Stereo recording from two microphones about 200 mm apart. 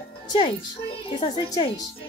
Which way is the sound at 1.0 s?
20° left (ahead or behind).